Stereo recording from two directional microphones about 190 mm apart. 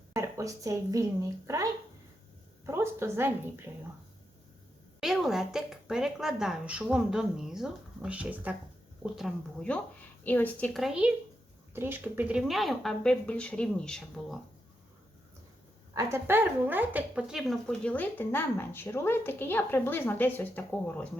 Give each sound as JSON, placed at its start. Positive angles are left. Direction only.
{"t": 0.1, "sound": "a woman's voice", "side_deg": -15}
{"t": 2.6, "sound": "a woman's voice", "side_deg": -15}
{"t": 4.9, "sound": "speech", "side_deg": 0}
{"t": 16.0, "sound": "speech", "side_deg": -15}